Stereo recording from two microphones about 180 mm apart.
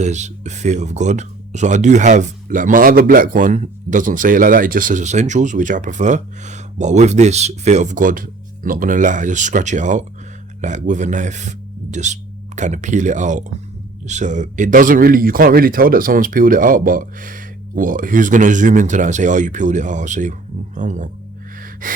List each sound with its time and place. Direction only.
0.0 s speech: 40° right (ahead or behind)
21.6 s gasp: 50° right (ahead or behind)